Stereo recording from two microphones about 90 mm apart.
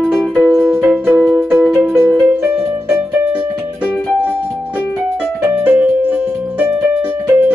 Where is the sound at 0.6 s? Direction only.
25° right (ahead or behind).